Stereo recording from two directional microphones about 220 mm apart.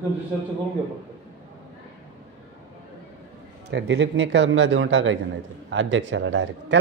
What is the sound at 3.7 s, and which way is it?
A man's voice, 55° right (ahead or behind).